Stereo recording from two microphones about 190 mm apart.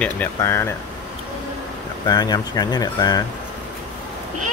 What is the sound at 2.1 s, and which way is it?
Speech, 20° left (ahead or behind).